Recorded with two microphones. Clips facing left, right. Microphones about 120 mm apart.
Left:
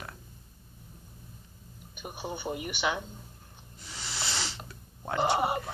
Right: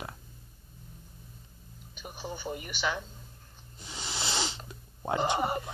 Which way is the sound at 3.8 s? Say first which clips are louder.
Right 2 dB; 20° right (ahead or behind).